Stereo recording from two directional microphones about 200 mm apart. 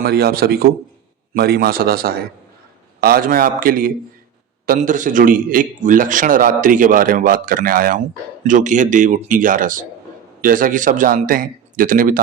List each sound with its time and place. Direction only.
0.0 s a man's voice: 50° right (ahead or behind)